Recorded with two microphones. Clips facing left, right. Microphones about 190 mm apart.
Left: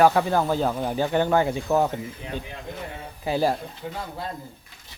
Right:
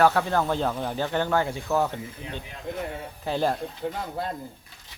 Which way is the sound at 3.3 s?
10° left (ahead or behind).